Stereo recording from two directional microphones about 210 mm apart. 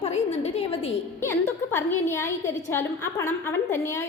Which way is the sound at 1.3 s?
10° left (ahead or behind).